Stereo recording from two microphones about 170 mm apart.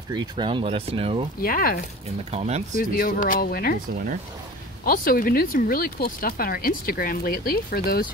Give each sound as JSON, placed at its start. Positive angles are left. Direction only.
{"t": 0.1, "sound": "speech", "side_deg": -25}
{"t": 1.4, "sound": "speech", "side_deg": 60}
{"t": 2.3, "sound": "speech", "side_deg": -40}
{"t": 2.8, "sound": "speech", "side_deg": 55}
{"t": 4.8, "sound": "speech", "side_deg": 55}